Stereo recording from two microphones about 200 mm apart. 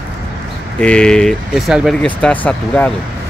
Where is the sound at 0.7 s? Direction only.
5° left (ahead or behind).